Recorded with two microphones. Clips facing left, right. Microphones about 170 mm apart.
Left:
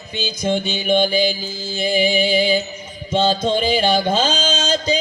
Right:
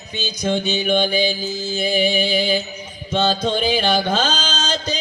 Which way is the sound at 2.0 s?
10° left (ahead or behind).